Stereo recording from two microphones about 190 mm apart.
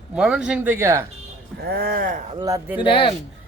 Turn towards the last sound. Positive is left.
turn(degrees=30)  # may be behind; listen again after turning